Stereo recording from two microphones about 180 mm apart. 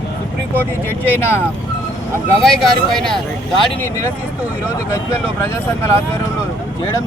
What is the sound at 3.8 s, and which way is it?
Speech, 15° left (ahead or behind).